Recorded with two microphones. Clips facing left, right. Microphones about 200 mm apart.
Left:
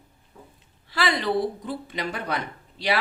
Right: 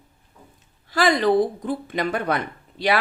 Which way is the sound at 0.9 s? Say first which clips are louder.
Right 6 dB; 45° right (ahead or behind).